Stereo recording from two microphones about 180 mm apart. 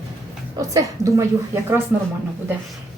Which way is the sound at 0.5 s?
20° right (ahead or behind).